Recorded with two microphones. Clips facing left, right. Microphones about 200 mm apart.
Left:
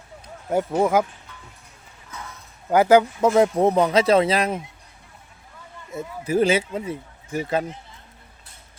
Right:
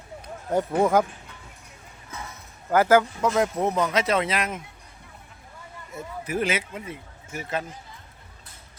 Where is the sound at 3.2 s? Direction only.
30° left (ahead or behind).